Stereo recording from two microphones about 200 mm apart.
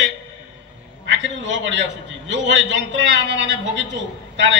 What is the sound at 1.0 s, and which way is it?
A man's voice, 65° right (ahead or behind).